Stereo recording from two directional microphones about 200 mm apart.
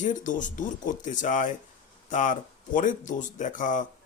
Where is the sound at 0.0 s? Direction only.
40° left (ahead or behind).